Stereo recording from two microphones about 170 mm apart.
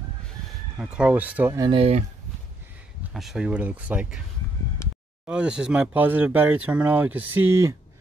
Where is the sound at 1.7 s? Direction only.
35° right (ahead or behind).